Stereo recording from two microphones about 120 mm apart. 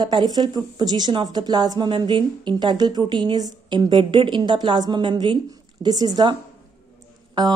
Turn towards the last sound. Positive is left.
turn(degrees=-35)  # may be behind; listen again after turning